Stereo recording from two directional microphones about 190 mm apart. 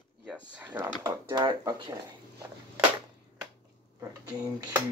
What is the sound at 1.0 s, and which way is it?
Speech, 20° right (ahead or behind).